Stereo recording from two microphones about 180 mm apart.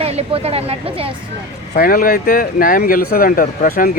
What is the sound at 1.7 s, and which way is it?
Speech, 55° left (ahead or behind).